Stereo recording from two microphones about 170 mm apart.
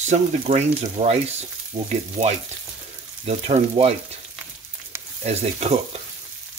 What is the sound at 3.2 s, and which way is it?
Speech, 40° right (ahead or behind).